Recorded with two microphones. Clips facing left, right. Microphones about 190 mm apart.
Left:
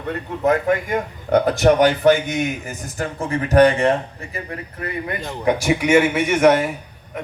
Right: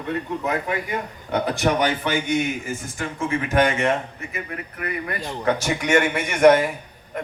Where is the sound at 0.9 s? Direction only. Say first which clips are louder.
Left 7 dB; 45° left (ahead or behind); by 5.2 s 25° left (ahead or behind).